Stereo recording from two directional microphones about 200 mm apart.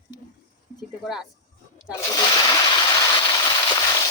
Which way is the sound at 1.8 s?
20° left (ahead or behind).